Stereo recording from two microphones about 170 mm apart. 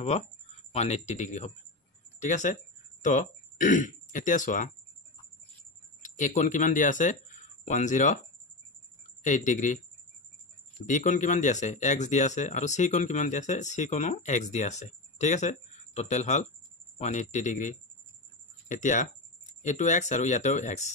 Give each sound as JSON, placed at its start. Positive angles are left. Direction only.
{"t": 0.7, "sound": "speech", "side_deg": 40}
{"t": 6.0, "sound": "speech", "side_deg": 50}
{"t": 9.2, "sound": "speech", "side_deg": 50}
{"t": 10.9, "sound": "speech", "side_deg": 50}